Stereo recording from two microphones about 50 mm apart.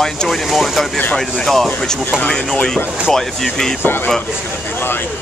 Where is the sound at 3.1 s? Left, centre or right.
Centre.